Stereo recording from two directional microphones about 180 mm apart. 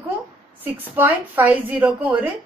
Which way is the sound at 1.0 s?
10° right (ahead or behind).